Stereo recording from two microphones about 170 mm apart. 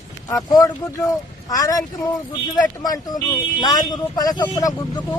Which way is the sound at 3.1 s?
20° left (ahead or behind).